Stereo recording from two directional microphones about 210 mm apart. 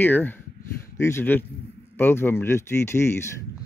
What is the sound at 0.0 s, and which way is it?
Speech, 10° left (ahead or behind).